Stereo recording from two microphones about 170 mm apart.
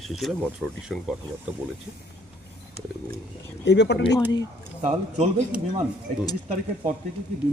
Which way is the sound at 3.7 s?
90° left.